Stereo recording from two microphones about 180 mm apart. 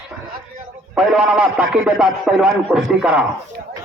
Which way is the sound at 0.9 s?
5° right (ahead or behind).